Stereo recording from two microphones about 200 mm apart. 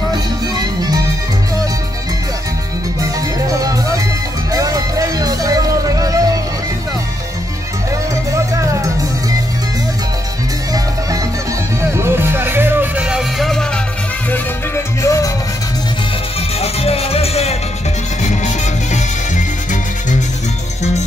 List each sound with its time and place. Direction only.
0.6 s music: 20° right (ahead or behind)
3.0 s music: 15° right (ahead or behind)
8.3 s music: 15° right (ahead or behind)
11.9 s music: 10° right (ahead or behind)
15.0 s music: 15° left (ahead or behind)
16.5 s music: 30° left (ahead or behind)